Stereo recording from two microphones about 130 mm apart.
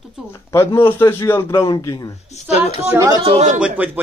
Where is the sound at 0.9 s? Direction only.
20° left (ahead or behind).